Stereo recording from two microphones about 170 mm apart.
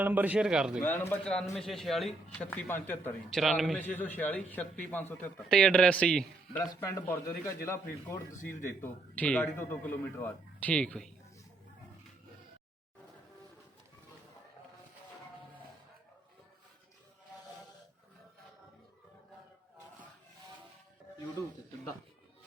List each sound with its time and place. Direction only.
0.0 s a man's voice: 10° right (ahead or behind)
0.9 s a man's voice: 10° left (ahead or behind)
2.5 s a man's voice: 10° left (ahead or behind)
3.2 s a man's voice: centre (ahead or behind)
3.8 s a man's voice: 10° left (ahead or behind)
6.6 s a man's voice: 20° left (ahead or behind)